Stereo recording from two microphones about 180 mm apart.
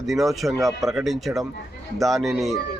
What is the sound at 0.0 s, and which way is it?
A man's voice, centre (ahead or behind).